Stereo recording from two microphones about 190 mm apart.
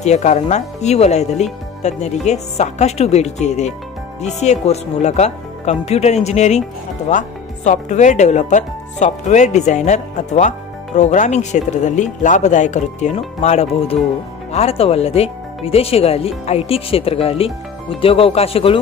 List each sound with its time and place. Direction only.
0.0 s speech: 35° left (ahead or behind)